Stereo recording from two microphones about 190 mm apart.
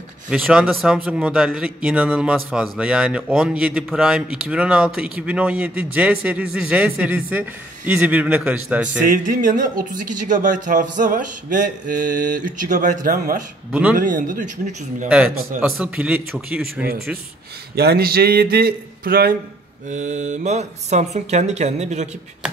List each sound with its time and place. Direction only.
0.3 s a man's voice: 5° right (ahead or behind)
9.0 s speech: 45° right (ahead or behind)
13.7 s a man's voice: 5° right (ahead or behind)
13.9 s speech: 45° right (ahead or behind)
15.0 s a man's voice: 5° right (ahead or behind)
17.7 s speech: 55° right (ahead or behind)
19.9 s speech: 40° right (ahead or behind)